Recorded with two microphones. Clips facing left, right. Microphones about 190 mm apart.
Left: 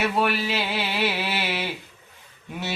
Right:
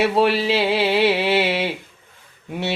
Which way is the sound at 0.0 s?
30° right (ahead or behind).